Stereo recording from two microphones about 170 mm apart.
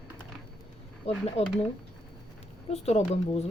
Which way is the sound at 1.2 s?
35° left (ahead or behind).